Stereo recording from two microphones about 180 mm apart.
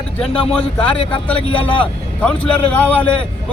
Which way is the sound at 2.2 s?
5° left (ahead or behind).